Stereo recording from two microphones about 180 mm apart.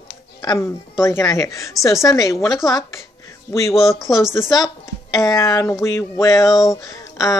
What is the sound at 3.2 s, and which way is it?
Music, 15° left (ahead or behind).